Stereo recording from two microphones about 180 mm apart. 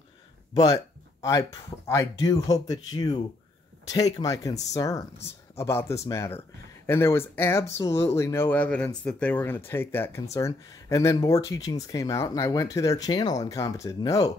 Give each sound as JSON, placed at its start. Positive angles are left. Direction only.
{"t": 0.6, "sound": "speech", "side_deg": 20}